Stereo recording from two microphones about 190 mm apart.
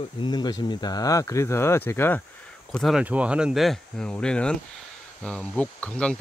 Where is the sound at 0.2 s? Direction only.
20° left (ahead or behind).